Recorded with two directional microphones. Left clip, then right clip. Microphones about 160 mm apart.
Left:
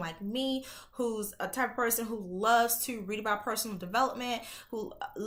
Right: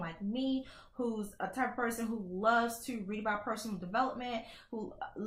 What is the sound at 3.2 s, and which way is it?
Speech, 15° left (ahead or behind).